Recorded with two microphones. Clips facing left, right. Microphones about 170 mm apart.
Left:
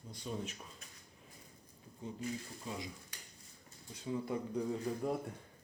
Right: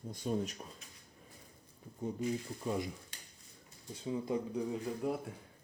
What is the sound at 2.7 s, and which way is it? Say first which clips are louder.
Speech: right 8 dB; 55° right (ahead or behind).